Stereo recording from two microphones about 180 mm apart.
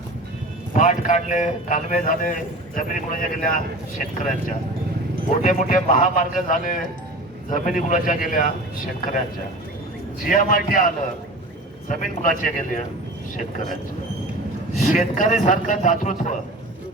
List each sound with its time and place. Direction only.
0.7 s a man's voice: 45° left (ahead or behind)
5.4 s a man's voice: 45° left (ahead or behind)
10.2 s a man's voice: 50° left (ahead or behind)
14.8 s a man's voice: 45° left (ahead or behind)